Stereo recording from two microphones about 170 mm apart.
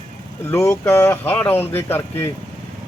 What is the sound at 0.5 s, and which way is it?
Speech, 15° left (ahead or behind).